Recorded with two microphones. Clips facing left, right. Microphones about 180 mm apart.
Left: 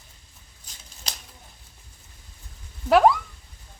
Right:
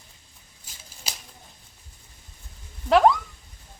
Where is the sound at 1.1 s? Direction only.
5° right (ahead or behind).